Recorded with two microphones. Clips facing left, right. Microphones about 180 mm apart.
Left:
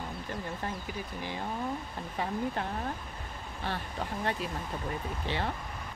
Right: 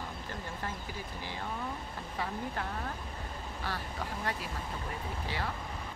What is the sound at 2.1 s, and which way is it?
Speech, 25° left (ahead or behind).